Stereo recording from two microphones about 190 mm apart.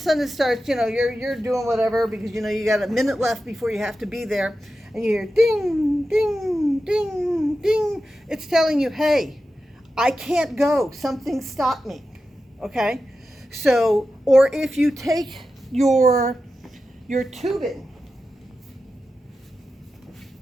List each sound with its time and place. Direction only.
0.0 s a man's voice: centre (ahead or behind)
15.0 s a woman's voice: 20° right (ahead or behind)
15.3 s a woman's voice: centre (ahead or behind)
17.2 s a man's voice: centre (ahead or behind)